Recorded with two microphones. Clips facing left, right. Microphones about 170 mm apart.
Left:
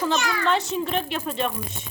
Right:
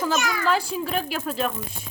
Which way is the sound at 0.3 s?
5° right (ahead or behind).